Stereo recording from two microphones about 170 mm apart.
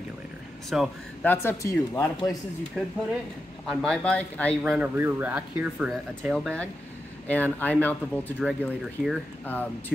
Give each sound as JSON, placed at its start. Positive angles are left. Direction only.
{"t": 0.7, "sound": "speech", "side_deg": -5}
{"t": 1.2, "sound": "speech", "side_deg": 10}
{"t": 2.8, "sound": "speech", "side_deg": 0}
{"t": 4.7, "sound": "speech", "side_deg": -10}
{"t": 6.3, "sound": "speech", "side_deg": 5}